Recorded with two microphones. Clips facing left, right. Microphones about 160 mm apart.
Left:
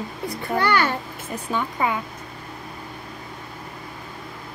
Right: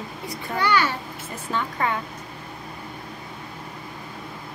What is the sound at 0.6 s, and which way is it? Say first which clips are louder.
Speech: left 1 dB; 55° left (ahead or behind).